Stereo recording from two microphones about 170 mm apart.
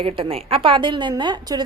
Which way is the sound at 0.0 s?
35° right (ahead or behind).